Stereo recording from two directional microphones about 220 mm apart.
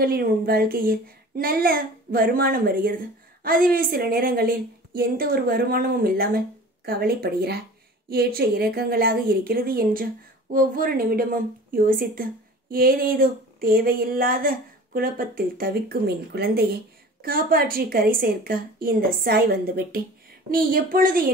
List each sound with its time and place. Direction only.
0.0 s speech: 45° right (ahead or behind)